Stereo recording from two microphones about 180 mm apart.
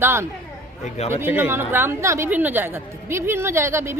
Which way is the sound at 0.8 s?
40° left (ahead or behind).